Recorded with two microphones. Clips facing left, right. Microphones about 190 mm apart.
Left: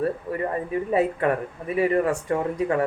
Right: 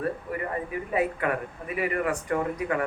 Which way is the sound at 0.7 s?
35° left (ahead or behind).